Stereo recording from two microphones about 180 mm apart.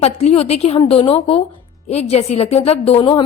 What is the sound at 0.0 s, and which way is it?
A woman's voice, 35° left (ahead or behind).